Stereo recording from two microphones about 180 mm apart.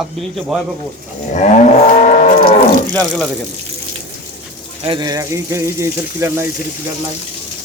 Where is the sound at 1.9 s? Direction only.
45° left (ahead or behind).